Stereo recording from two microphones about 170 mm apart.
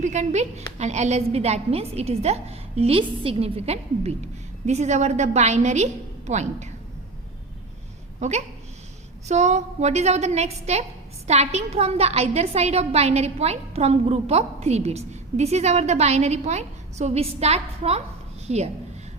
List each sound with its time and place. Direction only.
0.0 s a woman's voice: 45° right (ahead or behind)
8.2 s a woman's voice: 40° right (ahead or behind)